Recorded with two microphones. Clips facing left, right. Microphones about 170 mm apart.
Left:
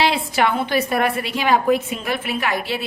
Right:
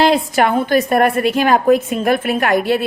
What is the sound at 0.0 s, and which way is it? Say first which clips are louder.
A woman's voice: right 5 dB; 45° right (ahead or behind).